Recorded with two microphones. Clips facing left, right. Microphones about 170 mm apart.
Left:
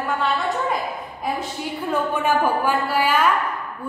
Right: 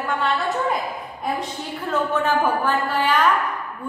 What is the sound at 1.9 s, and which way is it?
A woman's voice, 10° left (ahead or behind).